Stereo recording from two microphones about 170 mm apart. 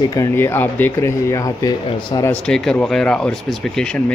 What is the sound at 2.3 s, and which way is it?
Speech, 5° left (ahead or behind).